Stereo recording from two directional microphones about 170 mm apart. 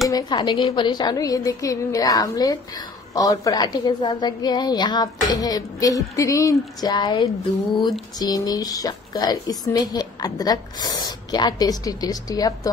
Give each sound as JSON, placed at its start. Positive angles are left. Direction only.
{"t": 0.1, "sound": "a woman's voice", "side_deg": 25}